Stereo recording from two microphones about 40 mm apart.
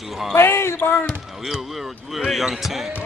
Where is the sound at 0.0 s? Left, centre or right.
Centre.